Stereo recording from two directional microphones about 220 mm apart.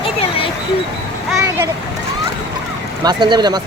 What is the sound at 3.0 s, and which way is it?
Speech, 20° right (ahead or behind).